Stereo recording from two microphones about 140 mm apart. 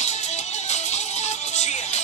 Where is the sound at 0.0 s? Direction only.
55° left (ahead or behind).